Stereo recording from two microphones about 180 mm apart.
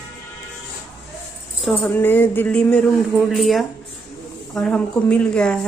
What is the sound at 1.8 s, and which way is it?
A woman's voice, 10° left (ahead or behind).